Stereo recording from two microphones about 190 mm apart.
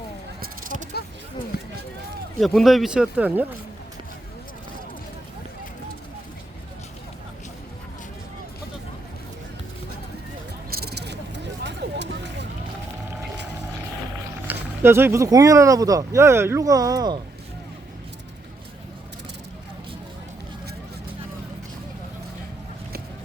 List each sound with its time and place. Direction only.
1.5 s run: 55° left (ahead or behind)
2.4 s speech: centre (ahead or behind)
10.7 s vehicle: 55° right (ahead or behind)
14.4 s speech: 10° right (ahead or behind)